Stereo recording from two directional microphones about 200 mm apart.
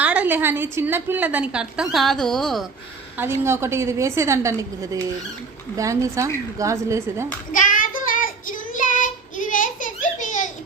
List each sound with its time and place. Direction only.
0.0 s a woman's voice: 5° right (ahead or behind)
3.2 s a woman's voice: 10° right (ahead or behind)
7.5 s child singing: 40° left (ahead or behind)
9.5 s a sound: 40° left (ahead or behind)